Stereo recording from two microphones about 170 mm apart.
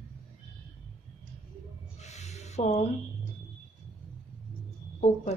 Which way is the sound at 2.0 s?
40° left (ahead or behind).